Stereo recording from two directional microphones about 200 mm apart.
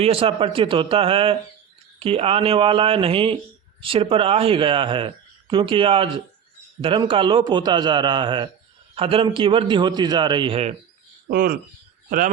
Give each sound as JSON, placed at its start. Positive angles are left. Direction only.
{"t": 0.0, "sound": "speech", "side_deg": -30}
{"t": 11.3, "sound": "speech", "side_deg": -45}